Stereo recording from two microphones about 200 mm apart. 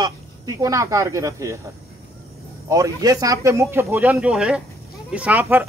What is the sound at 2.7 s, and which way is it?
A man's voice, 15° right (ahead or behind).